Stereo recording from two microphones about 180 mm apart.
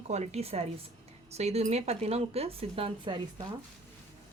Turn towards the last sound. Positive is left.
turn(degrees=-25)  # may be behind; listen again after turning